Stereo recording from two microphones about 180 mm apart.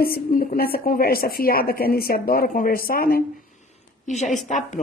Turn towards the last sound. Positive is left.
turn(degrees=45)  # may be behind; listen again after turning